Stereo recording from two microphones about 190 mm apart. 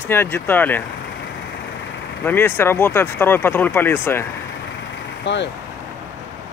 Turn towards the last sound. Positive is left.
turn(degrees=65)  # may be behind; listen again after turning